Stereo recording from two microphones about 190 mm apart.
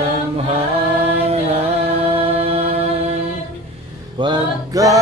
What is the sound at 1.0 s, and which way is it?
A capella, 30° right (ahead or behind).